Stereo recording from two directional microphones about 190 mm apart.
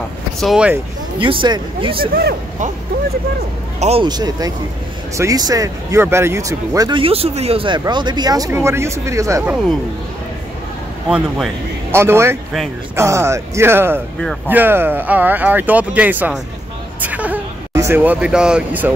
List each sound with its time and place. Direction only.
0.4 s speech: 5° right (ahead or behind)
1.2 s speech: 25° right (ahead or behind)
2.1 s speech: 55° right (ahead or behind)
3.8 s speech: 30° right (ahead or behind)
11.1 s speech: 5° right (ahead or behind)